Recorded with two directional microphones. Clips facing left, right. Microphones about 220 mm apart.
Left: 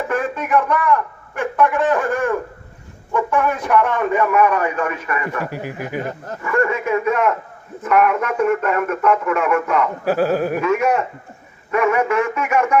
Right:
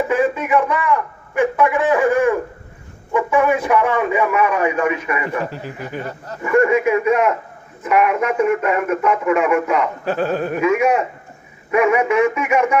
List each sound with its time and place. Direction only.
0.1 s a man's voice: 5° right (ahead or behind)
5.5 s speech: 15° left (ahead or behind)
6.4 s a man's voice: 20° right (ahead or behind)
10.0 s speech: 10° left (ahead or behind)
10.6 s a man's voice: 10° right (ahead or behind)